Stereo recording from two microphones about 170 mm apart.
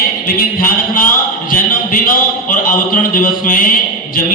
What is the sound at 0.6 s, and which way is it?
A man's voice, 55° left (ahead or behind).